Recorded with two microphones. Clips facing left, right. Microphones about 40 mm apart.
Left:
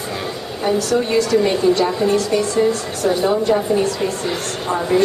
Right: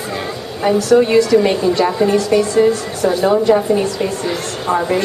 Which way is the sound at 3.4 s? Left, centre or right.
Centre.